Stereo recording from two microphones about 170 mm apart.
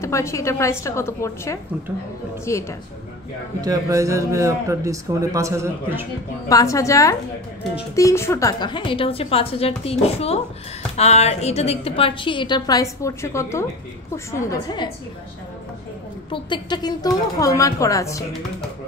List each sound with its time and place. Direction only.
0.0 s a woman's voice: 15° left (ahead or behind)
3.6 s speech: 20° right (ahead or behind)
6.5 s a woman's voice: 20° left (ahead or behind)
16.3 s a woman's voice: 30° left (ahead or behind)